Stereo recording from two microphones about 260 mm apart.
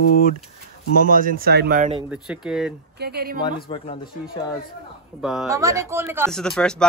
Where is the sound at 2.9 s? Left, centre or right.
Right.